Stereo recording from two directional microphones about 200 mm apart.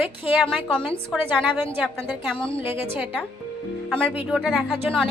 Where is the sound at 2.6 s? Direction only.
10° right (ahead or behind).